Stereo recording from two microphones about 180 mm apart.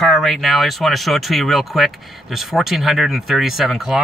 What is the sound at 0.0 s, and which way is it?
Speech, centre (ahead or behind).